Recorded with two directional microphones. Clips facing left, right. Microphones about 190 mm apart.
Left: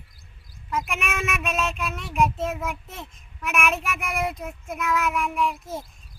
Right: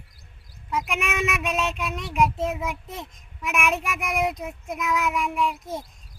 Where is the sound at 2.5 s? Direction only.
Centre (ahead or behind).